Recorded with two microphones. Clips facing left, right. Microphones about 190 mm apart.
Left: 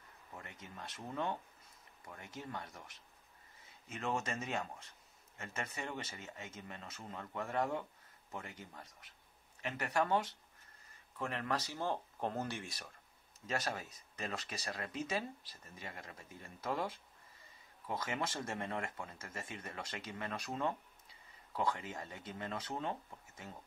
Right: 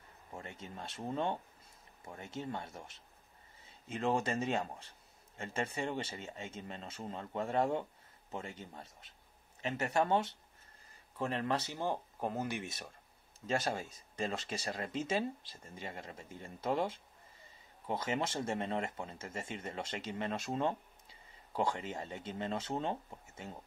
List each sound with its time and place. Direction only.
0.3 s speech: 30° right (ahead or behind)